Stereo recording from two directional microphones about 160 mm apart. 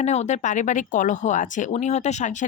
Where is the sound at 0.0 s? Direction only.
45° left (ahead or behind).